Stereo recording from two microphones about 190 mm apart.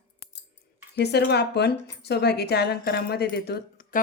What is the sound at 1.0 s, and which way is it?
A woman's voice, 60° left (ahead or behind).